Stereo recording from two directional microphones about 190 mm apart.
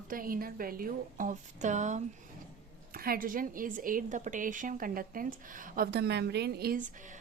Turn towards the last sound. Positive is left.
turn(degrees=-55)  # may be behind; listen again after turning